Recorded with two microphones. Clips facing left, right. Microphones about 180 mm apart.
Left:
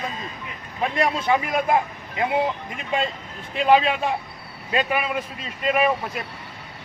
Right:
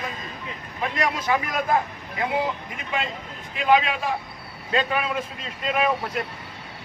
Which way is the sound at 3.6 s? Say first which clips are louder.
Left 2 dB; 30° left (ahead or behind).